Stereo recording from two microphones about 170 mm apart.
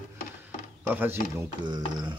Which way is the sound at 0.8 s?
10° right (ahead or behind).